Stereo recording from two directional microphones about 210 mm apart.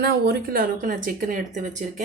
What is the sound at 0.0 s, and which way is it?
Speech, 50° right (ahead or behind).